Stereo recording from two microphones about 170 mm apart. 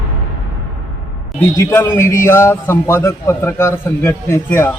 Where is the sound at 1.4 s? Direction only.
10° left (ahead or behind).